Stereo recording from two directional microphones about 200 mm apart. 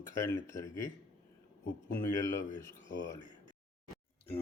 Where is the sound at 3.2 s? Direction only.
20° right (ahead or behind).